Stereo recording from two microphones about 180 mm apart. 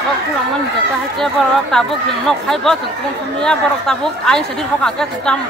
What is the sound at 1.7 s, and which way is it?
Speech, centre (ahead or behind).